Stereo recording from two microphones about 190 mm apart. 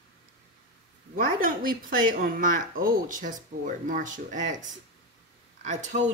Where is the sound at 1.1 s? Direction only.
45° right (ahead or behind).